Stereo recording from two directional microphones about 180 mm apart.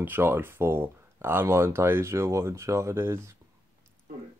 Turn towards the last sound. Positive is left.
turn(degrees=-15)  # may be behind; listen again after turning